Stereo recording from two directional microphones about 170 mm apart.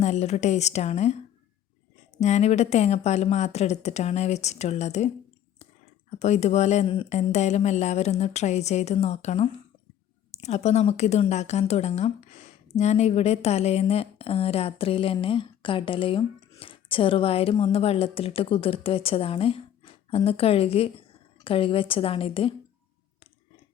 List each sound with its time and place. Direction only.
0.0 s speech: 40° left (ahead or behind)
2.2 s speech: 40° left (ahead or behind)
7.1 s speech: 40° left (ahead or behind)